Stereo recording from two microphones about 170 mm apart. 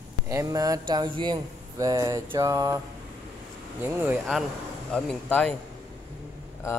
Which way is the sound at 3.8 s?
10° right (ahead or behind).